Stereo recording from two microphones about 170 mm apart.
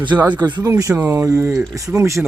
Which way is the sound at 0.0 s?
25° right (ahead or behind).